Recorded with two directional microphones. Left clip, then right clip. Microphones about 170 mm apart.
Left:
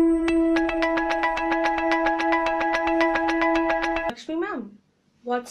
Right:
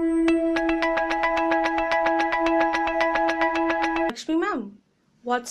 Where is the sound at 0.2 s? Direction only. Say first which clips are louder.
Even; centre (ahead or behind).